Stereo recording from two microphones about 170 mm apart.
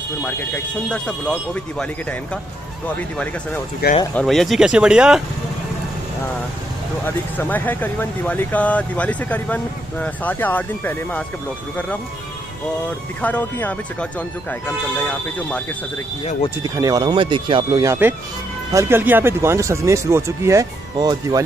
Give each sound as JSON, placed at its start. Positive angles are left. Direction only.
{"t": 0.5, "sound": "speech", "side_deg": 5}
{"t": 4.1, "sound": "speech", "side_deg": 5}
{"t": 7.1, "sound": "speech", "side_deg": 10}
{"t": 13.2, "sound": "speech", "side_deg": 10}
{"t": 16.6, "sound": "speech", "side_deg": -20}
{"t": 17.8, "sound": "speech", "side_deg": -10}